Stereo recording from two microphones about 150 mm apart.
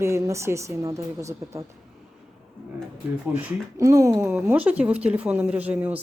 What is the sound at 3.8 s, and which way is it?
Speech, 20° right (ahead or behind).